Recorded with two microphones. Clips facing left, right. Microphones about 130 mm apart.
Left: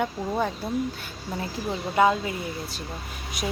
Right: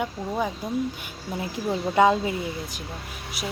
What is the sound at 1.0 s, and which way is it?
Speech, 15° right (ahead or behind).